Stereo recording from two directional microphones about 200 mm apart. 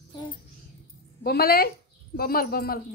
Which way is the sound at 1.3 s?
50° left (ahead or behind).